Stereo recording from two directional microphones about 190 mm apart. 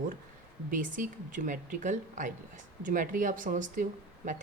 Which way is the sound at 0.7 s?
45° right (ahead or behind).